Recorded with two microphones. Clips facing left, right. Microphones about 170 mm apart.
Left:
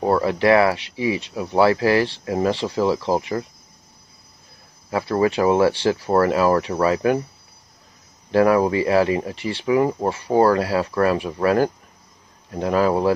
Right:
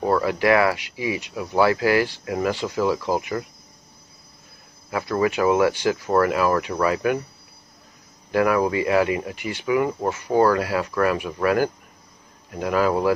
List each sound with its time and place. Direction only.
0.0 s speech: 30° left (ahead or behind)
4.9 s speech: 30° left (ahead or behind)
8.3 s speech: 30° left (ahead or behind)